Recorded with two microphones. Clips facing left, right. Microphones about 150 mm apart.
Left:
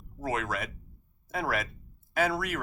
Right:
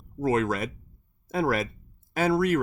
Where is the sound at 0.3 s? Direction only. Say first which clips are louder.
Right 7 dB; 35° right (ahead or behind).